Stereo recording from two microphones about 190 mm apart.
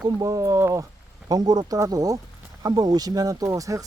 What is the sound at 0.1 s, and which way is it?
Speech, 15° right (ahead or behind).